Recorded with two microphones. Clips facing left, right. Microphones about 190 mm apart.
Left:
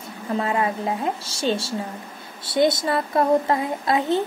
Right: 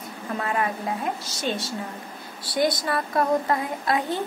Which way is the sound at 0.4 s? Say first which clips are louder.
Left 3 dB; 25° left (ahead or behind).